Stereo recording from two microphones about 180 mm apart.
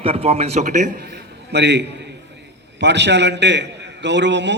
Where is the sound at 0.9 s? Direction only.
65° right (ahead or behind).